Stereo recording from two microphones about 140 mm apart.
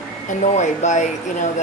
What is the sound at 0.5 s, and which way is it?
Speech, 60° left (ahead or behind).